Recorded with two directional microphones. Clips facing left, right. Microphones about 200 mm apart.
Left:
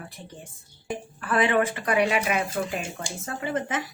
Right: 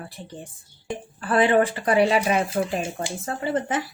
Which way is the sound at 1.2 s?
30° right (ahead or behind).